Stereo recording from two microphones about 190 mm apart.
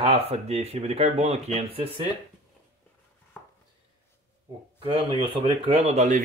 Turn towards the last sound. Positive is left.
turn(degrees=-40)  # may be behind; listen again after turning